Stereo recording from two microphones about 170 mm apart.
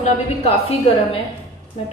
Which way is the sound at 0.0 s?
40° left (ahead or behind).